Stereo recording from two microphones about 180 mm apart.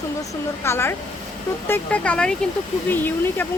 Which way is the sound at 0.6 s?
15° left (ahead or behind).